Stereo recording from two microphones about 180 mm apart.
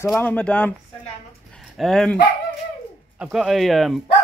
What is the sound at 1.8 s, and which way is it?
Speech, 5° left (ahead or behind).